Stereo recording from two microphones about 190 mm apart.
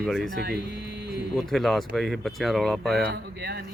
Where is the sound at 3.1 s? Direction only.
60° right (ahead or behind).